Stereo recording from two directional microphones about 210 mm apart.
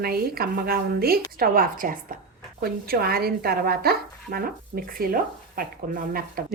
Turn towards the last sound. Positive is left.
turn(degrees=-45)  # may be behind; listen again after turning